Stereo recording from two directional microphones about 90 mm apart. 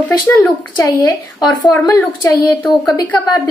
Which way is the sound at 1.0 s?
35° left (ahead or behind).